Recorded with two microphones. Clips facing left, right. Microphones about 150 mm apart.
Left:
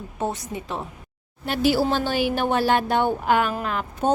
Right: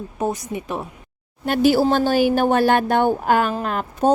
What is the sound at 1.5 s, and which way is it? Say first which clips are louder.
Speech: right 5 dB; 50° right (ahead or behind).